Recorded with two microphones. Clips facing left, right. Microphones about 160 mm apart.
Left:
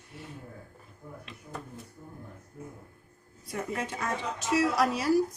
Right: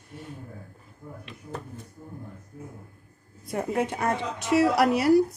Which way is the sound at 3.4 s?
60° right (ahead or behind).